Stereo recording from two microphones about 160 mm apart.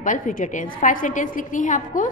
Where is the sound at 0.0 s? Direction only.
55° left (ahead or behind).